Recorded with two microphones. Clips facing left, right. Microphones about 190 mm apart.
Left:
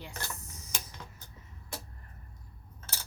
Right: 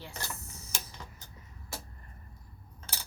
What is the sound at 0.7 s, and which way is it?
Tick-tock, 10° right (ahead or behind).